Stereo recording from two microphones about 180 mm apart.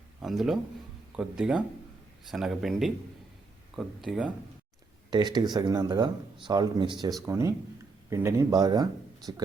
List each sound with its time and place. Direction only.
0.2 s speech: centre (ahead or behind)
5.1 s speech: 25° right (ahead or behind)